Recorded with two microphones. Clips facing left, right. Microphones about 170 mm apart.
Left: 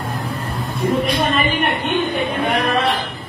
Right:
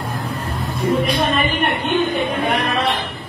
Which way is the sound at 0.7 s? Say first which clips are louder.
Even; centre (ahead or behind).